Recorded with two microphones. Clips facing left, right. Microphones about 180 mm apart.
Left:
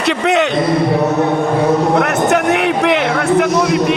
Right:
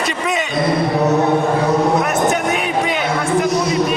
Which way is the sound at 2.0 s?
70° left (ahead or behind).